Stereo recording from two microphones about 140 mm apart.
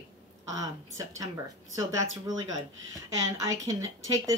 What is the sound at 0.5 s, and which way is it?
A woman's voice, 25° right (ahead or behind).